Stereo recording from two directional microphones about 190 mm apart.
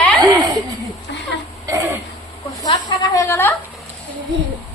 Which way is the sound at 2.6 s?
20° left (ahead or behind).